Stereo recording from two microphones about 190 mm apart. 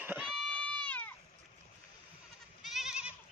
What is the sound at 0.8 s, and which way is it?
Sheep, 10° left (ahead or behind).